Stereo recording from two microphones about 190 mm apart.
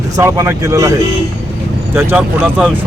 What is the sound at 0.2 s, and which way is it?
Speech, 15° right (ahead or behind).